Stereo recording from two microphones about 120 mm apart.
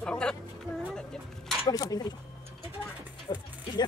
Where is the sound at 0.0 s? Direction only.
10° left (ahead or behind).